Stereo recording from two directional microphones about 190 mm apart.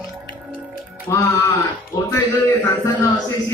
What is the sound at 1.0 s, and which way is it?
Speech, 20° left (ahead or behind).